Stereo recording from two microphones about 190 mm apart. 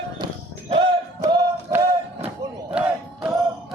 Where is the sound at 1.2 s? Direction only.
20° right (ahead or behind).